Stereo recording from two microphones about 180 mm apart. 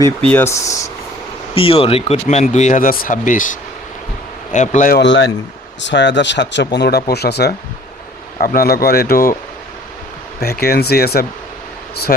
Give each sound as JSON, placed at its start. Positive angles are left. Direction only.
{"t": 0.3, "sound": "speech", "side_deg": 15}
{"t": 1.5, "sound": "speech", "side_deg": 30}
{"t": 4.5, "sound": "speech", "side_deg": 40}
{"t": 4.9, "sound": "speech", "side_deg": 80}
{"t": 6.7, "sound": "a man's voice", "side_deg": 65}
{"t": 8.4, "sound": "a man's voice", "side_deg": 50}
{"t": 10.4, "sound": "a man's voice", "side_deg": 60}